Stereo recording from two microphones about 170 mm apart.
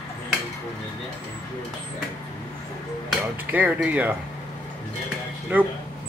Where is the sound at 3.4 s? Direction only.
10° right (ahead or behind).